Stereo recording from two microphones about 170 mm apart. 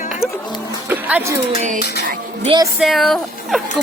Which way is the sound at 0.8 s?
10° right (ahead or behind).